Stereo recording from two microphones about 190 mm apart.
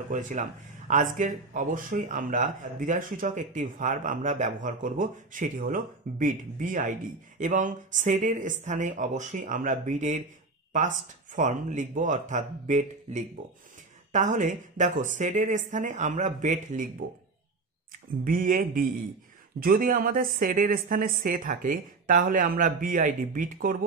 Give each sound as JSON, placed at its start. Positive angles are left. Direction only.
{"t": 0.1, "sound": "speech", "side_deg": -40}
{"t": 11.3, "sound": "speech", "side_deg": -40}
{"t": 18.2, "sound": "speech", "side_deg": -45}